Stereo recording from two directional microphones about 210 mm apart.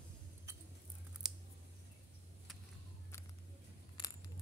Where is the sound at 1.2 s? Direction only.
Centre (ahead or behind).